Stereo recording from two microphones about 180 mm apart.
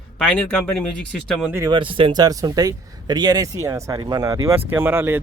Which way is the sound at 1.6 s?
25° right (ahead or behind).